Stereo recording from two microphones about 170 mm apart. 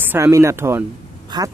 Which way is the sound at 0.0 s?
15° right (ahead or behind).